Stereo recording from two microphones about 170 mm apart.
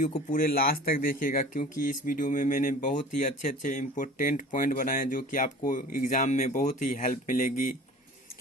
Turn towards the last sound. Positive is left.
turn(degrees=55)  # may be behind; listen again after turning